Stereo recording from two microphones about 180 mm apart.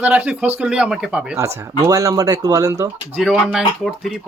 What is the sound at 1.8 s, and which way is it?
Speech, 20° right (ahead or behind).